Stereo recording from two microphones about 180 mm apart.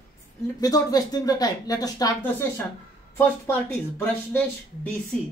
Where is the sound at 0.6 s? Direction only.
20° left (ahead or behind).